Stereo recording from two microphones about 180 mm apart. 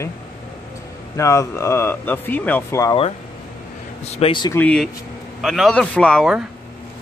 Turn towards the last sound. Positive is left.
turn(degrees=0)  # may be behind; listen again after turning